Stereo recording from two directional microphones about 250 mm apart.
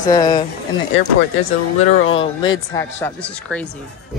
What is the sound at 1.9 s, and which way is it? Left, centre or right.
Speech, left.